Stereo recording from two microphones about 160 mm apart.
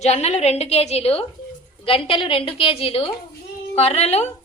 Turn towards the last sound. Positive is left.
turn(degrees=40)  # may be behind; listen again after turning